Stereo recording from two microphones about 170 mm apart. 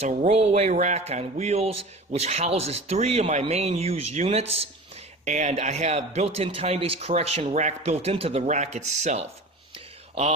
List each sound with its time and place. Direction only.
0.0 s a man's voice: 40° right (ahead or behind)